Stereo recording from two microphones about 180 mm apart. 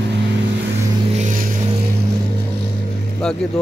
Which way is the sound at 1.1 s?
45° right (ahead or behind).